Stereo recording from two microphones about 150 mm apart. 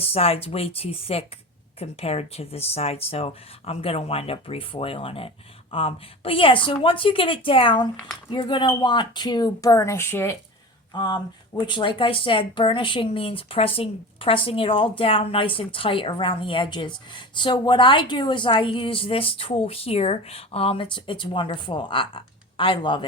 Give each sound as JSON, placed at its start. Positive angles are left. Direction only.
{"t": 0.0, "sound": "speech", "side_deg": 40}
{"t": 10.9, "sound": "speech", "side_deg": 30}